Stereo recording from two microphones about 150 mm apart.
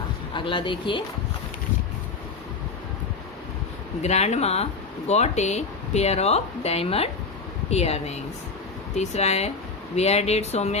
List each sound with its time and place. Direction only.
0.3 s speech: 35° left (ahead or behind)
4.0 s speech: 50° left (ahead or behind)